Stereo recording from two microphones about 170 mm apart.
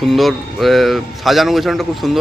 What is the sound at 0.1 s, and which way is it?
Speech, centre (ahead or behind).